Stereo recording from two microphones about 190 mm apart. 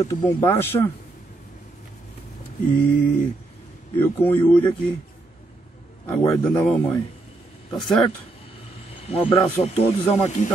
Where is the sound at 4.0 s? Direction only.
10° left (ahead or behind).